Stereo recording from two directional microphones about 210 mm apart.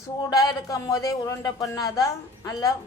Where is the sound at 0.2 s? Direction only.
20° left (ahead or behind).